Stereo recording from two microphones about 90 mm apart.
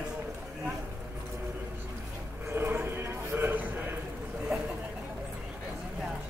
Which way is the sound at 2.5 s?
25° right (ahead or behind).